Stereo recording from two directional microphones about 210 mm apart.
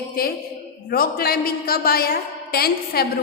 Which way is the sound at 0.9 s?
45° left (ahead or behind).